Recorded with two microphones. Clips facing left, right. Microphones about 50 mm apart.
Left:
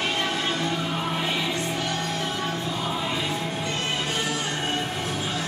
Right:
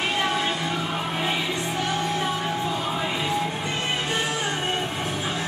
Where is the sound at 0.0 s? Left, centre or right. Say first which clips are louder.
Right 2 dB; centre.